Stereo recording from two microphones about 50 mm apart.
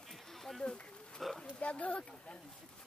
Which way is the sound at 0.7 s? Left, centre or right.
Centre.